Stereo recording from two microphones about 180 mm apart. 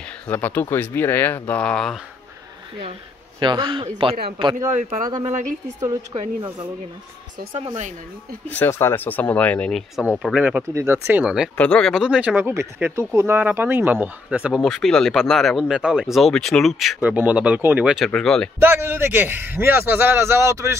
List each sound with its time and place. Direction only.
0.3 s speech: 10° left (ahead or behind)
3.3 s a man's voice: 25° right (ahead or behind)
7.5 s speech: 40° right (ahead or behind)
8.5 s a man's voice: 15° left (ahead or behind); by 11.5 s 5° right (ahead or behind)
11.5 s speech: 5° left (ahead or behind)
18.6 s a man's voice: 10° right (ahead or behind)